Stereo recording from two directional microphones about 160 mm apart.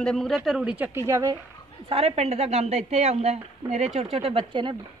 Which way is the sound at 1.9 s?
40° right (ahead or behind).